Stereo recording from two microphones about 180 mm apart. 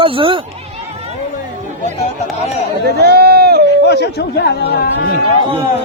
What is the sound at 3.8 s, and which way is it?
Speech, 65° left (ahead or behind).